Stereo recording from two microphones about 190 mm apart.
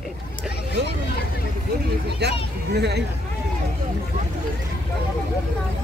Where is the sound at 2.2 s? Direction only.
60° right (ahead or behind).